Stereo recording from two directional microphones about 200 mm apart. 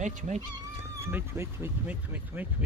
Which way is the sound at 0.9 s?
15° right (ahead or behind).